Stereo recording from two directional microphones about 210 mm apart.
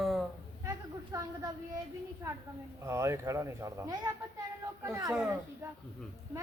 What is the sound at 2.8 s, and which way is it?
A man's voice, 15° right (ahead or behind).